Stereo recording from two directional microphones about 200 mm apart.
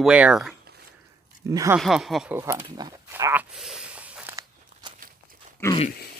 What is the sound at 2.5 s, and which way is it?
Speech, 25° right (ahead or behind).